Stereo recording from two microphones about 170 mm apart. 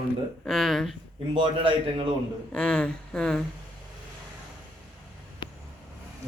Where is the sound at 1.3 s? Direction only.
30° right (ahead or behind).